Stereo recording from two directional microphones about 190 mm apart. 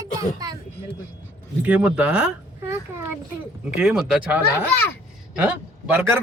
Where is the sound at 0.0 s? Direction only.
20° right (ahead or behind).